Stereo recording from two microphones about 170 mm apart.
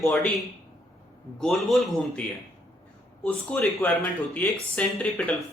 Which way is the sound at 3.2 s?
5° left (ahead or behind).